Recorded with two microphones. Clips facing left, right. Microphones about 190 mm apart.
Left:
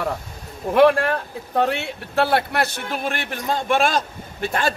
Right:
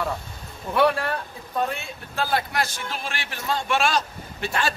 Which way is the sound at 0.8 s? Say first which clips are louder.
Left 6 dB; 60° left (ahead or behind).